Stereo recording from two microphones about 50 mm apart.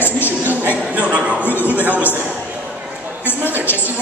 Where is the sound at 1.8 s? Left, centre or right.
Right.